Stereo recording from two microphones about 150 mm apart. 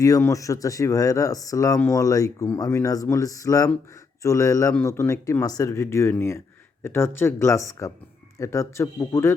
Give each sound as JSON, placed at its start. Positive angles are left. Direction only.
{"t": 0.0, "sound": "speech", "side_deg": 20}